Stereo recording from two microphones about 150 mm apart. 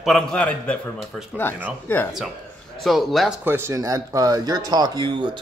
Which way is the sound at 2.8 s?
Centre (ahead or behind).